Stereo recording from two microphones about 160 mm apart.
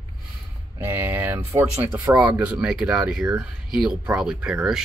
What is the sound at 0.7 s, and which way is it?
Speech, 10° right (ahead or behind).